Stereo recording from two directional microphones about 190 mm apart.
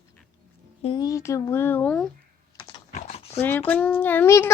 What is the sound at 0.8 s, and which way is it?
Speech, 20° left (ahead or behind).